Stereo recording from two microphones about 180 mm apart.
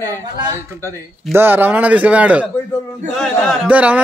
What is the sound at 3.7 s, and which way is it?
Speech, 10° right (ahead or behind).